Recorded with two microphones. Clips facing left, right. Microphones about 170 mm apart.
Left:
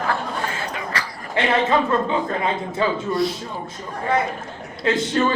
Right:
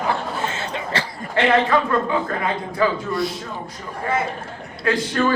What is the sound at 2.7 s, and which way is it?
Speech, 25° left (ahead or behind).